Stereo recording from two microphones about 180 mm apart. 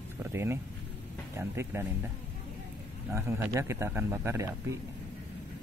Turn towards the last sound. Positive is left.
turn(degrees=-15)  # may be behind; listen again after turning